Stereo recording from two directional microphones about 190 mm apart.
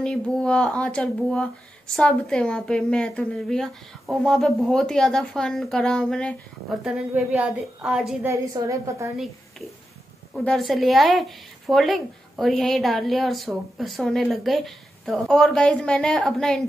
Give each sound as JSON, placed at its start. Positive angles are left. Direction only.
{"t": 0.0, "sound": "speech", "side_deg": 5}
{"t": 8.3, "sound": "a woman's voice", "side_deg": -15}
{"t": 10.3, "sound": "speech", "side_deg": 0}